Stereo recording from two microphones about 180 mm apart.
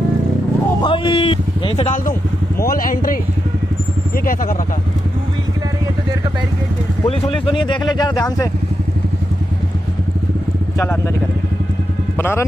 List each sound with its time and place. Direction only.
0.8 s a sound: 30° left (ahead or behind)
2.6 s speech: 55° left (ahead or behind)
4.2 s speech: 50° left (ahead or behind)
7.1 s speech: 30° left (ahead or behind)
12.2 s speech: 10° left (ahead or behind)